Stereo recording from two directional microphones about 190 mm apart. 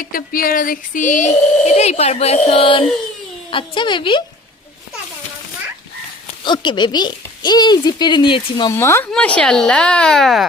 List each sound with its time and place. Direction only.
0.0 s speech: 50° left (ahead or behind); by 4.2 s 25° left (ahead or behind)
6.4 s speech: 25° left (ahead or behind)
8.7 s speech: 15° left (ahead or behind)